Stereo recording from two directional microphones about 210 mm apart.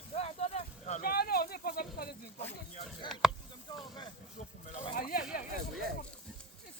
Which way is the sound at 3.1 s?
Centre (ahead or behind).